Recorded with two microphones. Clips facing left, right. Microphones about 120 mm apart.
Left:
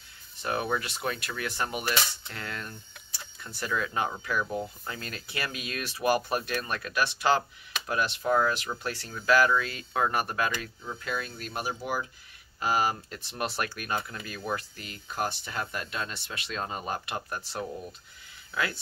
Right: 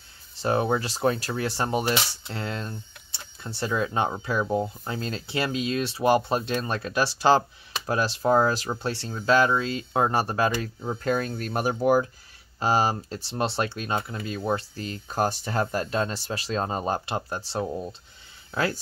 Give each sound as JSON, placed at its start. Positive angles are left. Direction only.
{"t": 0.4, "sound": "speech", "side_deg": -30}
{"t": 10.8, "sound": "speech", "side_deg": -45}
{"t": 12.5, "sound": "speech", "side_deg": -30}